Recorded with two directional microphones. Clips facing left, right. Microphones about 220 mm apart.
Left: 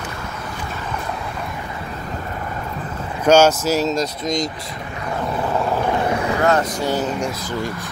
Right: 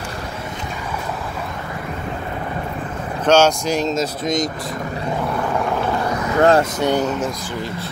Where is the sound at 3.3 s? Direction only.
5° left (ahead or behind).